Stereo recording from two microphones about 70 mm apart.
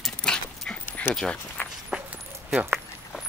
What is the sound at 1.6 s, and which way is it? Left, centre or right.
Walk, left.